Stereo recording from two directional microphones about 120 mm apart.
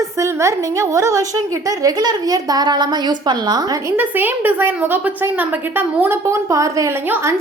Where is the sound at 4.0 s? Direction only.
15° right (ahead or behind).